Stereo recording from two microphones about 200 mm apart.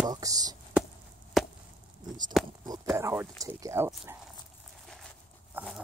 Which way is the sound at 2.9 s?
15° right (ahead or behind).